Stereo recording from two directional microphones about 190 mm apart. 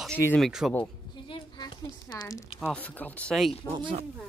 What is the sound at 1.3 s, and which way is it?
Speech, 25° left (ahead or behind).